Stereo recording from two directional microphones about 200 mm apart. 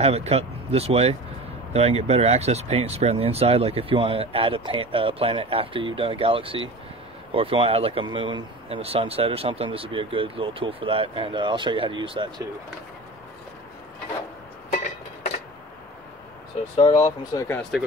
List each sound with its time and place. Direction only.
0.0 s speech: 30° right (ahead or behind)
16.7 s speech: 25° left (ahead or behind)
17.6 s speech: centre (ahead or behind)